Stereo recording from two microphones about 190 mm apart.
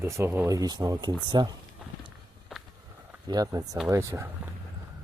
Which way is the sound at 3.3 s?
20° right (ahead or behind).